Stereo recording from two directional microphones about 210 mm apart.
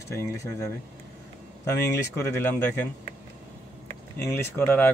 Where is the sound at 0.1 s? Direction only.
10° left (ahead or behind).